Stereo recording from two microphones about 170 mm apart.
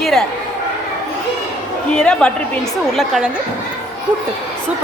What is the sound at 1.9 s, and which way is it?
A woman's voice, 5° left (ahead or behind).